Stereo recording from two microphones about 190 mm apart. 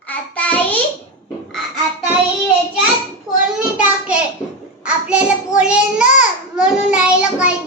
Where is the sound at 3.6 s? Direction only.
5° right (ahead or behind).